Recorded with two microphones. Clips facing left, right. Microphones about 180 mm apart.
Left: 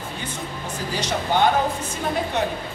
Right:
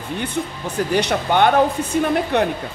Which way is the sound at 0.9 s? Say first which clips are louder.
Right 4 dB; 60° right (ahead or behind).